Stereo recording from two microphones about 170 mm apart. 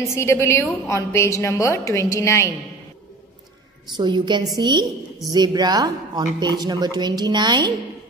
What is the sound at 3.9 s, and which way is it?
A woman's voice, 25° right (ahead or behind).